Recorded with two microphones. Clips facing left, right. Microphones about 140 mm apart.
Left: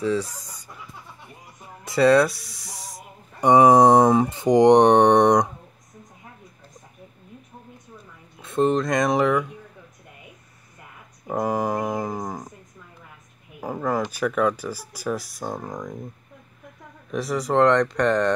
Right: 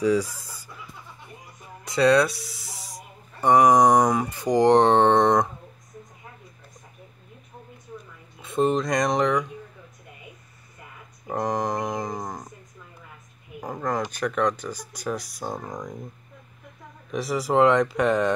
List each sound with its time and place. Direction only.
0.0 s speech: 10° right (ahead or behind)
1.9 s speech: centre (ahead or behind)
3.3 s speech: 20° left (ahead or behind)
8.4 s speech: centre (ahead or behind)
11.2 s a sound: 5° left (ahead or behind)
13.6 s a sound: 5° left (ahead or behind)
14.1 s speech: 5° left (ahead or behind)
17.1 s speech: centre (ahead or behind)